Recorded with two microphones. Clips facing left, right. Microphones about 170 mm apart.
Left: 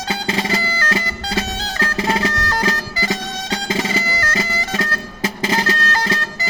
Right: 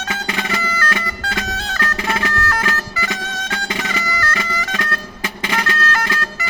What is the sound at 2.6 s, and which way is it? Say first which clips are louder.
Bagpipes: left 2 dB; 35° left (ahead or behind).